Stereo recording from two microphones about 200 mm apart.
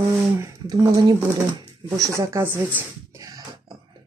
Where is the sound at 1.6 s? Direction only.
20° right (ahead or behind).